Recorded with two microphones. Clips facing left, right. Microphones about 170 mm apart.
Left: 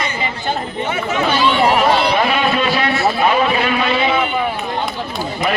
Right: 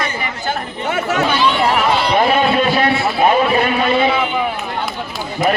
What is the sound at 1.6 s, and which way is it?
Run, 15° left (ahead or behind).